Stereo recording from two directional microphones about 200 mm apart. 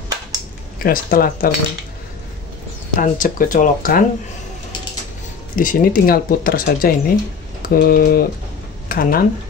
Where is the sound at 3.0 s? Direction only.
40° left (ahead or behind).